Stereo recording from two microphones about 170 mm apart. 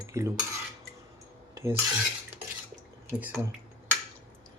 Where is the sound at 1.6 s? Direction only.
15° right (ahead or behind).